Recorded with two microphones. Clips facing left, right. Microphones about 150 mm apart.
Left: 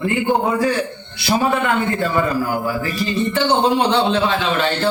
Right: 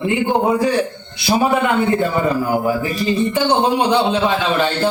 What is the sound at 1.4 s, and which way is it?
A man's voice, 15° right (ahead or behind).